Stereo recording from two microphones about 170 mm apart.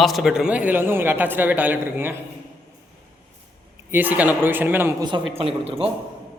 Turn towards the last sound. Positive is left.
turn(degrees=-35)  # may be behind; listen again after turning